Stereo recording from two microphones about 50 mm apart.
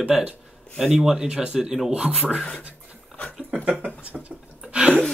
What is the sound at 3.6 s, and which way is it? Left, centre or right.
Speech, right.